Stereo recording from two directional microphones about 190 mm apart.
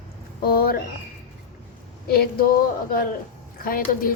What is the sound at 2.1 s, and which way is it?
A woman's voice, 50° left (ahead or behind).